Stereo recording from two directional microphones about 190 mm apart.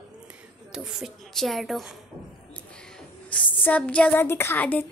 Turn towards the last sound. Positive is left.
turn(degrees=10)  # may be behind; listen again after turning